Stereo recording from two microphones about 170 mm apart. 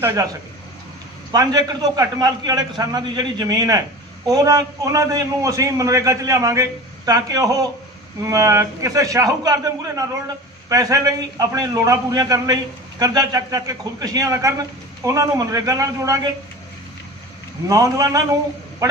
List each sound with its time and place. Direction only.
0.0 s a man's voice: 20° right (ahead or behind)
1.3 s a man's voice: 20° right (ahead or behind)
17.6 s a man's voice: 20° right (ahead or behind)